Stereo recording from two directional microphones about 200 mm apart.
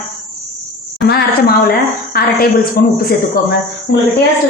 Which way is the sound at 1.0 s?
50° left (ahead or behind).